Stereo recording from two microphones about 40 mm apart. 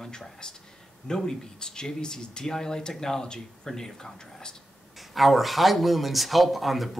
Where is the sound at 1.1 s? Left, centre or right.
Centre.